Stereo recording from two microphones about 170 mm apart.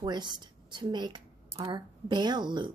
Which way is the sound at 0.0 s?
25° right (ahead or behind).